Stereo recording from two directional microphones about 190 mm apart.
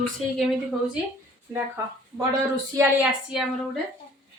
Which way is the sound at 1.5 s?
10° right (ahead or behind).